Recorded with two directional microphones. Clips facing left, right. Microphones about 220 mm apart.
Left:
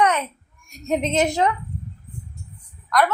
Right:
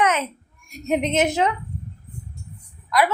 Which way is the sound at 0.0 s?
20° right (ahead or behind).